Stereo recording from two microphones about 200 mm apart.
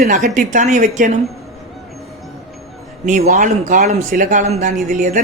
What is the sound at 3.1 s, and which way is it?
Speech, 40° right (ahead or behind).